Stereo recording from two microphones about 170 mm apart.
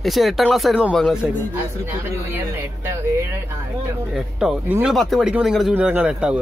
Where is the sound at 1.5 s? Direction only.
15° right (ahead or behind).